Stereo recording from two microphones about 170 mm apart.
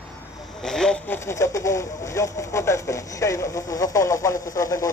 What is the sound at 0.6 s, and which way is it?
A man's voice, 5° left (ahead or behind).